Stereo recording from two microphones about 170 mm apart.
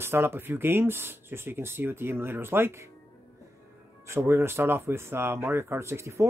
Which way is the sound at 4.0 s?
15° right (ahead or behind).